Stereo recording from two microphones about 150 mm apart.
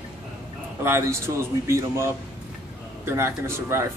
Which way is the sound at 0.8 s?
15° right (ahead or behind).